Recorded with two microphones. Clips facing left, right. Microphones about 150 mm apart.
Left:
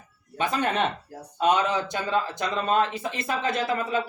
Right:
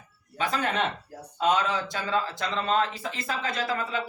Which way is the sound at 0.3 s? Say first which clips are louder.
Left 2 dB; 20° left (ahead or behind).